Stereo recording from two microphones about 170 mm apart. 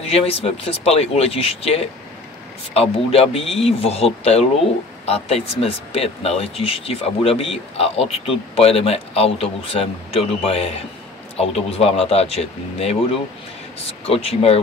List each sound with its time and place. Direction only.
0.0 s speech: 35° left (ahead or behind)